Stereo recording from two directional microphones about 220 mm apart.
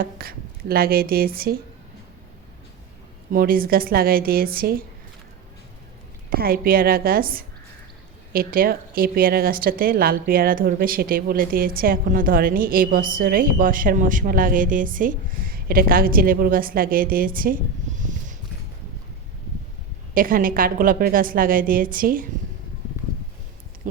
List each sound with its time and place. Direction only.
0.0 s speech: 45° right (ahead or behind)
3.3 s a woman's voice: 40° right (ahead or behind)
6.3 s a woman's voice: 40° right (ahead or behind)
20.1 s a woman's voice: 40° right (ahead or behind)
23.9 s a sound: 35° right (ahead or behind)